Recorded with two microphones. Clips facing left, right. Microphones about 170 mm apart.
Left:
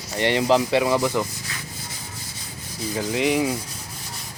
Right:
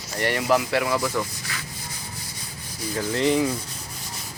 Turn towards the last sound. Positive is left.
turn(degrees=10)  # may be behind; listen again after turning